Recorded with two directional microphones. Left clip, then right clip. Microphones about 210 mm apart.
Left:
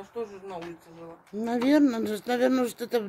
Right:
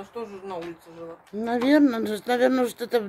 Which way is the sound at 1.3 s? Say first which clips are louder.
Right 3 dB; 5° left (ahead or behind).